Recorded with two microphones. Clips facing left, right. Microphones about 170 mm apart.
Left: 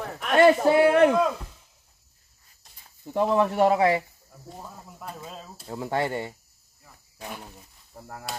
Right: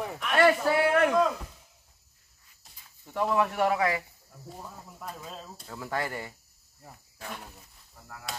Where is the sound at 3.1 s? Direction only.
30° left (ahead or behind).